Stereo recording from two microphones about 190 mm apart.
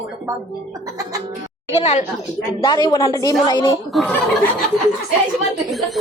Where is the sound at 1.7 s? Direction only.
35° left (ahead or behind).